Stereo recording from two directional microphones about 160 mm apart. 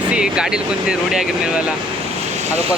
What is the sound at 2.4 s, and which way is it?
Boat, 45° right (ahead or behind).